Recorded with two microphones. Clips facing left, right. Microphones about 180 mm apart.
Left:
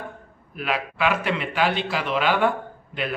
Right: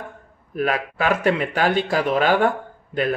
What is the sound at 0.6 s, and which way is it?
A man's voice, 45° right (ahead or behind).